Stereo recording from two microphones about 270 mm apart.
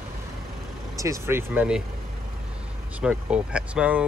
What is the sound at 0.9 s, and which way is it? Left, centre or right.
Speech, centre.